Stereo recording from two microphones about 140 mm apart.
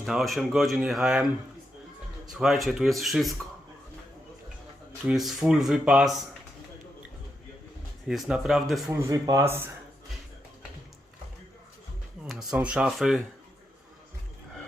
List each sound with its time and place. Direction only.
0.0 s speech: centre (ahead or behind)
2.4 s speech: centre (ahead or behind)
5.0 s speech: 5° right (ahead or behind)
8.0 s speech: 5° right (ahead or behind)
8.9 s speech: 20° right (ahead or behind)
12.3 s speech: centre (ahead or behind)